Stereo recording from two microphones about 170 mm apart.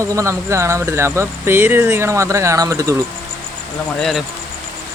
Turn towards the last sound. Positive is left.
turn(degrees=0)  # may be behind; listen again after turning